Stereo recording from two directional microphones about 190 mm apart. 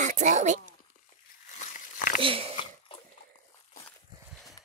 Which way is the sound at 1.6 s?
45° left (ahead or behind).